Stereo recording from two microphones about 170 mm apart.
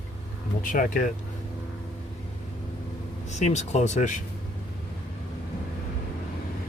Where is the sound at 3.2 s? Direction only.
45° left (ahead or behind).